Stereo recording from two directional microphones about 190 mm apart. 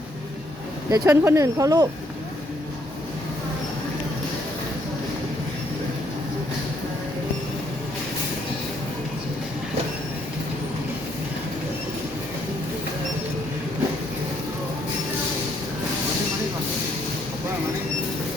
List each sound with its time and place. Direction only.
0.9 s speech: 15° right (ahead or behind)